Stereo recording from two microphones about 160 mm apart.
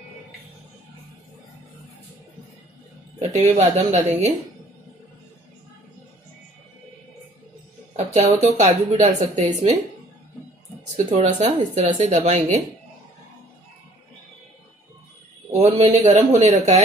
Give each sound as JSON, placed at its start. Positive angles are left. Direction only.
{"t": 3.2, "sound": "a woman's voice", "side_deg": -45}
{"t": 7.9, "sound": "a sound", "side_deg": -40}
{"t": 8.5, "sound": "a woman's voice", "side_deg": -50}
{"t": 11.3, "sound": "a woman's voice", "side_deg": -45}
{"t": 15.5, "sound": "a sound", "side_deg": -40}
{"t": 16.0, "sound": "a woman's voice", "side_deg": -45}